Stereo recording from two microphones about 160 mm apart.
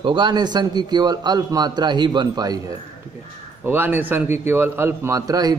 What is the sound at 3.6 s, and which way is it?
A man's voice, 15° right (ahead or behind).